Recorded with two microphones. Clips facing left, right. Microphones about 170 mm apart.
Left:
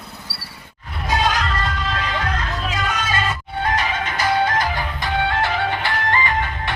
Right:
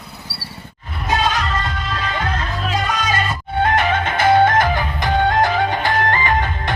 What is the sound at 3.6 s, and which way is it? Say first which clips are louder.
Music: right 5 dB; 55° right (ahead or behind).